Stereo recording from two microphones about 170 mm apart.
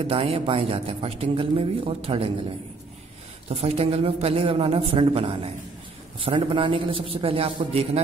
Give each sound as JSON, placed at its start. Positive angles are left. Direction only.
{"t": 0.0, "sound": "speech", "side_deg": -35}
{"t": 3.4, "sound": "speech", "side_deg": -35}